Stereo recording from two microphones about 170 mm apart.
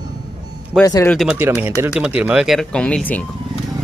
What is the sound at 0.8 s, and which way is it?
Speech, 20° left (ahead or behind).